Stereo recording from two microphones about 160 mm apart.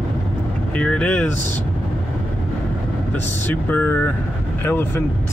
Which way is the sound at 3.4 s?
10° left (ahead or behind).